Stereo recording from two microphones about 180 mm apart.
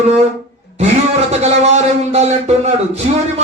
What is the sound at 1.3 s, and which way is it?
A man's voice, 40° right (ahead or behind).